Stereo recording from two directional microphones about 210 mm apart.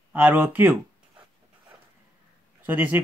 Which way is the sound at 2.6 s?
10° right (ahead or behind).